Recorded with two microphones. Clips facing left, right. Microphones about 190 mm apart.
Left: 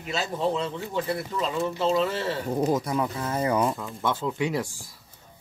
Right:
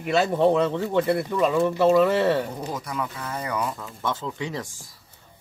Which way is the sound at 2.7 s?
25° left (ahead or behind).